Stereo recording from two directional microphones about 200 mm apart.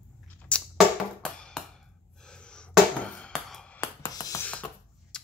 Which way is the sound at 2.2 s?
5° left (ahead or behind).